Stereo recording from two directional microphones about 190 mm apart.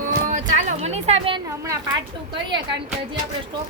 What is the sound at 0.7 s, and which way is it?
Speech, 35° right (ahead or behind).